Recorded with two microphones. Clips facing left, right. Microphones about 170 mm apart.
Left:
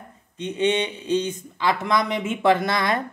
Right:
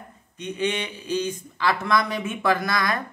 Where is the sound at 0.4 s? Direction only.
25° left (ahead or behind).